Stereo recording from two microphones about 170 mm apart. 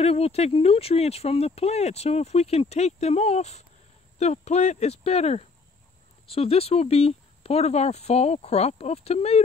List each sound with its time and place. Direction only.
0.0 s speech: 35° left (ahead or behind)